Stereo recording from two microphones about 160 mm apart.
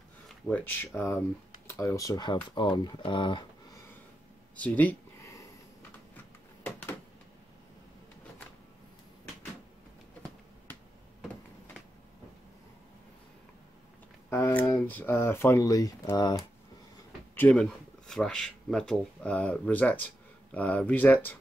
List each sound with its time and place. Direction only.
0.5 s speech: 10° left (ahead or behind); by 3.4 s 30° left (ahead or behind)
4.6 s a sound: 10° left (ahead or behind)
14.3 s speech: 15° left (ahead or behind)
17.4 s speech: 10° left (ahead or behind)